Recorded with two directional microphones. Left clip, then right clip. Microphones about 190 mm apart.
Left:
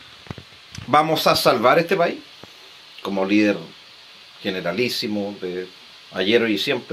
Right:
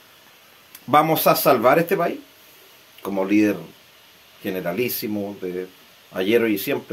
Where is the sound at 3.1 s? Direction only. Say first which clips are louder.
Left 1 dB; 10° right (ahead or behind).